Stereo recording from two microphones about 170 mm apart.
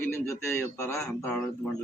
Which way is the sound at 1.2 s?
5° left (ahead or behind).